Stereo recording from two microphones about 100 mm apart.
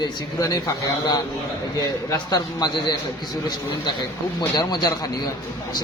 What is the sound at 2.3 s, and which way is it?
Speech, 45° left (ahead or behind).